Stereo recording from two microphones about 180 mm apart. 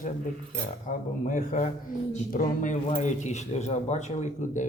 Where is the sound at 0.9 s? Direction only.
40° left (ahead or behind).